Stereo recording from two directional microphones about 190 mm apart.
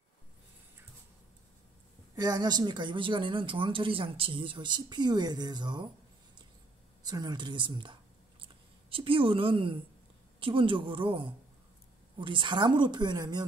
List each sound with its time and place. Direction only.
2.1 s a woman's voice: 20° right (ahead or behind)
7.0 s a sound: 20° right (ahead or behind)
8.9 s a woman's voice: 30° right (ahead or behind)